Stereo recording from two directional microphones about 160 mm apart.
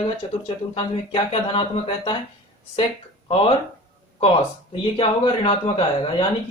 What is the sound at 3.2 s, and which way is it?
Speech, 35° left (ahead or behind).